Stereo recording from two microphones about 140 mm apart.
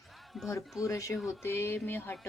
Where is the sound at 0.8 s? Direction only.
20° left (ahead or behind).